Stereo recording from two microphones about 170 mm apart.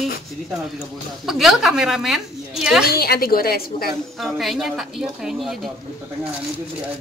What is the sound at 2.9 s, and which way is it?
A woman's voice, 65° left (ahead or behind).